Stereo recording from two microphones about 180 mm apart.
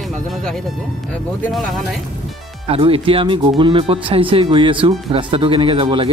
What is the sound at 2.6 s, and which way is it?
Speech, 30° right (ahead or behind).